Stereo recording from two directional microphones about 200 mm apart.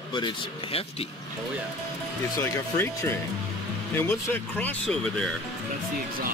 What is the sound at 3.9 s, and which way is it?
Speech, 10° left (ahead or behind).